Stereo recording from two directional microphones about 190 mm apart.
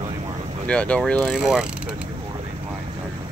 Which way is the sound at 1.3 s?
5° right (ahead or behind).